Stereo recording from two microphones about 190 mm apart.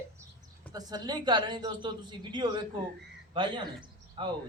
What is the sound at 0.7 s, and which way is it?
A man's voice, 20° right (ahead or behind).